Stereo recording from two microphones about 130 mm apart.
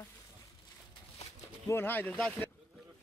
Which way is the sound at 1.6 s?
15° left (ahead or behind).